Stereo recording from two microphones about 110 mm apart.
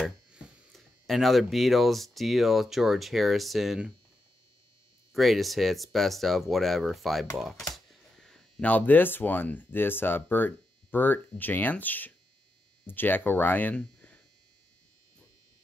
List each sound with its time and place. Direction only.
0.7 s speech: centre (ahead or behind)
5.1 s speech: centre (ahead or behind)